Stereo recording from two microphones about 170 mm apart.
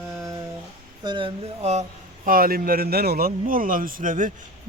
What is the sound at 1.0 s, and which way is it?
Speech, 30° right (ahead or behind).